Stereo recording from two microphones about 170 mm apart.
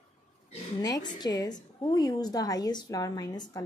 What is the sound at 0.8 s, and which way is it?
A woman's voice, 25° left (ahead or behind).